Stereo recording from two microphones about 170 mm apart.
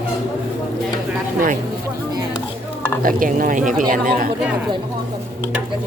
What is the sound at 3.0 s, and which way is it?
Stir, 55° right (ahead or behind).